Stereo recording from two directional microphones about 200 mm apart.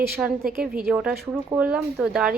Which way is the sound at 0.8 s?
5° right (ahead or behind).